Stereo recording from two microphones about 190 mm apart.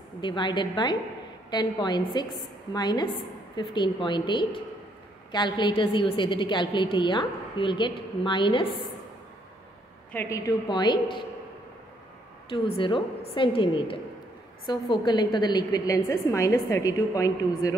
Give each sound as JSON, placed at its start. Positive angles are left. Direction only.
{"t": 0.2, "sound": "a woman's voice", "side_deg": 25}
{"t": 10.1, "sound": "a woman's voice", "side_deg": 15}
{"t": 12.4, "sound": "a woman's voice", "side_deg": 30}